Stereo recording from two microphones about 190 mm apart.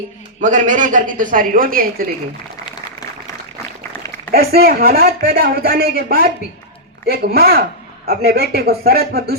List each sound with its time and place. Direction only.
0.4 s speech: 40° right (ahead or behind)
4.3 s speech: 55° right (ahead or behind)